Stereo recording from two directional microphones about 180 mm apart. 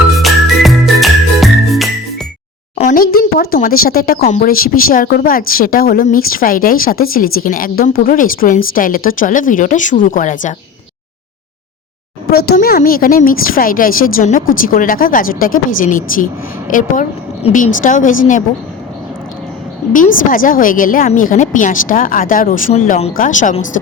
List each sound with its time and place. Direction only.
0.2 s music: centre (ahead or behind)
2.9 s a sound: 55° left (ahead or behind)
4.2 s a woman's voice: 45° left (ahead or behind)
12.3 s a woman's voice: 60° left (ahead or behind)
19.9 s a woman's voice: 50° left (ahead or behind)
23.1 s a woman's voice: 45° left (ahead or behind)